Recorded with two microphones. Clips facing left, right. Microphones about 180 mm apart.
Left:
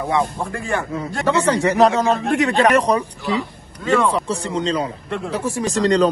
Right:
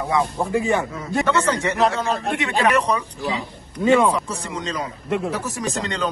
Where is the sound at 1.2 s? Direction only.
35° left (ahead or behind).